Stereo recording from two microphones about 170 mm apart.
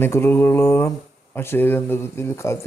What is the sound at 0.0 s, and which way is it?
Speech, 15° left (ahead or behind).